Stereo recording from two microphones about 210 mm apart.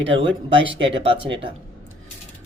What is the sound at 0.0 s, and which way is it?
Speech, 60° right (ahead or behind).